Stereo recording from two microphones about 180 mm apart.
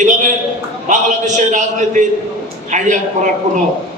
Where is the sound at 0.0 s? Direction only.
45° right (ahead or behind).